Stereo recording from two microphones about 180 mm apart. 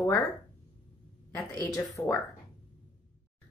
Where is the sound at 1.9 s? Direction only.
15° left (ahead or behind).